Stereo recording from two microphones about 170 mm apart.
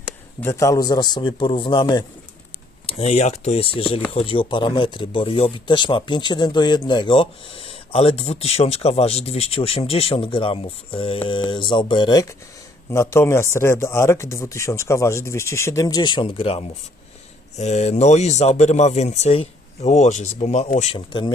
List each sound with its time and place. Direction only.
0.4 s speech: 20° left (ahead or behind)
2.8 s speech: 40° left (ahead or behind)
12.9 s speech: 15° left (ahead or behind); by 21.0 s 45° left (ahead or behind)
21.1 s speech: 30° left (ahead or behind)